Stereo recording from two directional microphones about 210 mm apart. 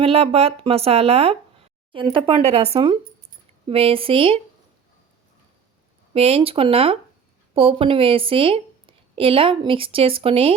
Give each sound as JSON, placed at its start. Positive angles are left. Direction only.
{"t": 0.0, "sound": "a woman's voice", "side_deg": -25}
{"t": 6.1, "sound": "a woman's voice", "side_deg": -25}